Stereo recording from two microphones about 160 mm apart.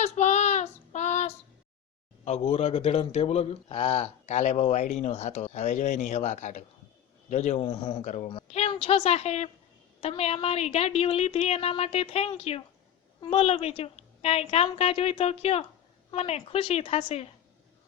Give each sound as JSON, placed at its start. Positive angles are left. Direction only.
{"t": 0.0, "sound": "child singing", "side_deg": 45}
{"t": 2.2, "sound": "a woman's voice", "side_deg": 40}
{"t": 8.0, "sound": "speech", "side_deg": 50}
{"t": 8.3, "sound": "a child's voice", "side_deg": 35}